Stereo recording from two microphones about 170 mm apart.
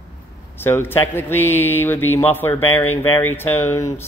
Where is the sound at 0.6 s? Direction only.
15° left (ahead or behind).